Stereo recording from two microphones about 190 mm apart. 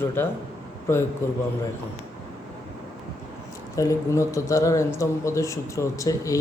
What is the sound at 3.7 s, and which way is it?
Speech, 15° left (ahead or behind).